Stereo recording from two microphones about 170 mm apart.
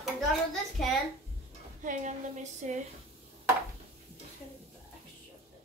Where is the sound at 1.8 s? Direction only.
50° right (ahead or behind).